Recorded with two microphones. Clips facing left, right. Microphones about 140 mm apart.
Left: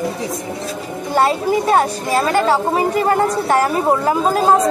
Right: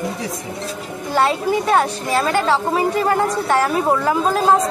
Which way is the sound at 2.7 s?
45° left (ahead or behind).